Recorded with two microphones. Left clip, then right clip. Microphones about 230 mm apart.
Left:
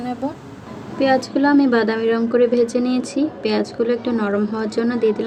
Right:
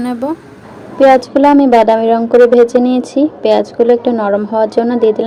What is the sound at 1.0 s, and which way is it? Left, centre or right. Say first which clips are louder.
A woman's voice: right 10 dB; centre.